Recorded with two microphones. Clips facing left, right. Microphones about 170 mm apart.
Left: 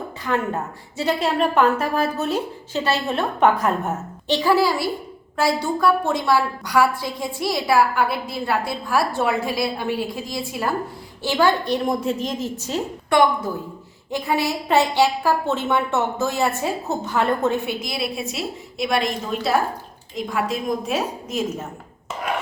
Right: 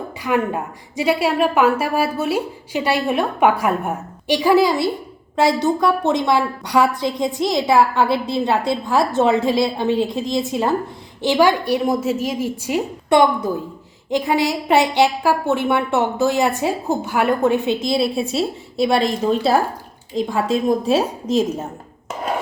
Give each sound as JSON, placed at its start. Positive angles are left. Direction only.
{"t": 0.2, "sound": "a woman's voice", "side_deg": -10}